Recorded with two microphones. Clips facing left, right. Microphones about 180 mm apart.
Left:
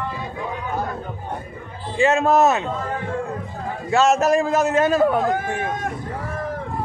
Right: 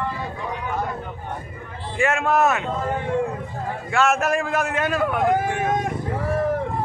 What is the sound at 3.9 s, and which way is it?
Music, 35° left (ahead or behind).